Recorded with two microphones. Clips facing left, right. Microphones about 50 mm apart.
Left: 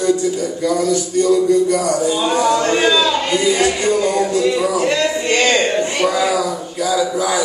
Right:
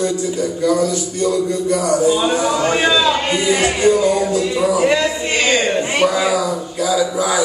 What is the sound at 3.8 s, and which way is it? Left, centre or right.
Speech, centre.